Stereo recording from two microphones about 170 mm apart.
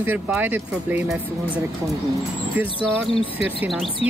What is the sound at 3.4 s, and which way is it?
Speech, 5° right (ahead or behind).